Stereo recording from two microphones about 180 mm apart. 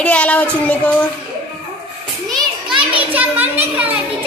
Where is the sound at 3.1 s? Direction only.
10° right (ahead or behind).